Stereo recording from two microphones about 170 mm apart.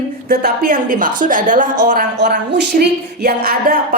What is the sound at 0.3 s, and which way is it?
A woman's voice, 60° right (ahead or behind).